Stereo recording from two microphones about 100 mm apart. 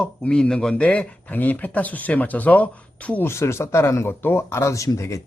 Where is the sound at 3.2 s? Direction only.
25° left (ahead or behind).